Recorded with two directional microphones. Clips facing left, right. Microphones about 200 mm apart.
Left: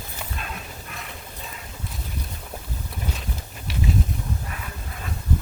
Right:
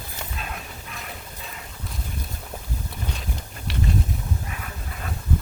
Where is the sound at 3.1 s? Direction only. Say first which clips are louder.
Even; centre (ahead or behind).